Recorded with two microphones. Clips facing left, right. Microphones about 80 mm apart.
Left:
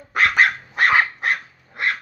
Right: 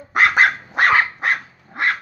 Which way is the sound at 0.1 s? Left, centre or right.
Centre.